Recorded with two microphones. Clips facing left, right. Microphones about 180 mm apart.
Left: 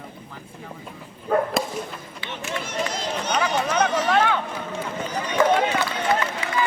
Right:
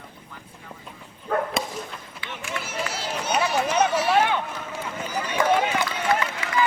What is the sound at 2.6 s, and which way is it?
Run, 5° right (ahead or behind).